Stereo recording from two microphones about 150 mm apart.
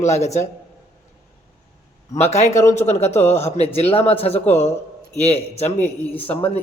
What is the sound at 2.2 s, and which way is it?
Speech, 45° left (ahead or behind).